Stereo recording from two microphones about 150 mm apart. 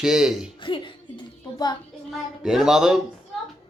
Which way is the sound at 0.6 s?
35° left (ahead or behind).